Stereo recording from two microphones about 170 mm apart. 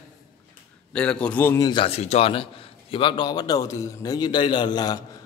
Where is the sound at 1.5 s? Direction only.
25° left (ahead or behind).